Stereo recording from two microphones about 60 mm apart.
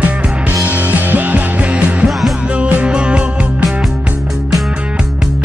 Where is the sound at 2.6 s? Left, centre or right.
Centre.